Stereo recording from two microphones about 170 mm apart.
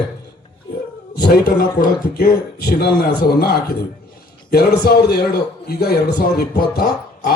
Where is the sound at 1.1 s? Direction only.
70° left (ahead or behind).